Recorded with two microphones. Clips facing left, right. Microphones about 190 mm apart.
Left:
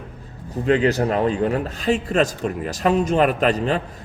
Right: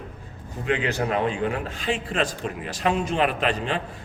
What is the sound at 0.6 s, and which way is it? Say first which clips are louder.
A man's voice: left 7 dB; 40° left (ahead or behind).